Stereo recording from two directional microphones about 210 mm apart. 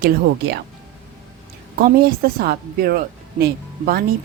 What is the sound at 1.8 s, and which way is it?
Speech, 45° right (ahead or behind).